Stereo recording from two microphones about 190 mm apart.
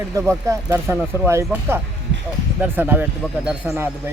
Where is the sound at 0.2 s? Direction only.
15° right (ahead or behind).